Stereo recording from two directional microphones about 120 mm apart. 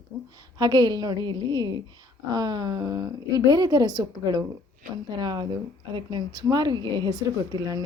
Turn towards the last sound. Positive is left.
turn(degrees=-35)  # may be behind; listen again after turning